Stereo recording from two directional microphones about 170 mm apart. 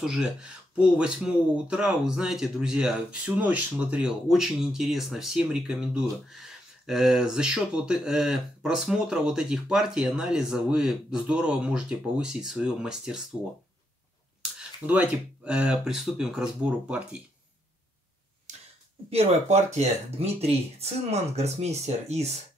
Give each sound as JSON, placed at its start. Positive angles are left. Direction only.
{"t": 0.0, "sound": "speech", "side_deg": -5}
{"t": 14.4, "sound": "speech", "side_deg": -5}
{"t": 18.5, "sound": "a sound", "side_deg": -45}
{"t": 19.0, "sound": "speech", "side_deg": -40}